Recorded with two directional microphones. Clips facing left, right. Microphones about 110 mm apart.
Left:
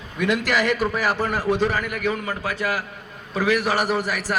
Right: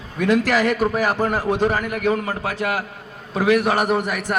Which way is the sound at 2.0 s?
55° right (ahead or behind).